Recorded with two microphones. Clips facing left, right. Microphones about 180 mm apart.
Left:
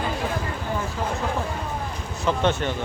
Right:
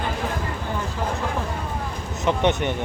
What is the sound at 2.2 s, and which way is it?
Speech, 20° right (ahead or behind).